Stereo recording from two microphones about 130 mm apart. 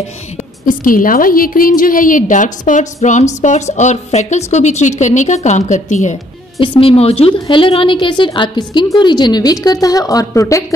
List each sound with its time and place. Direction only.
0.7 s a woman's voice: 90° left; by 6.1 s 65° left (ahead or behind)
6.6 s a woman's voice: 45° left (ahead or behind); by 10.6 s 25° left (ahead or behind)